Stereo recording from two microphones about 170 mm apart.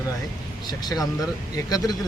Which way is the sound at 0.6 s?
25° left (ahead or behind).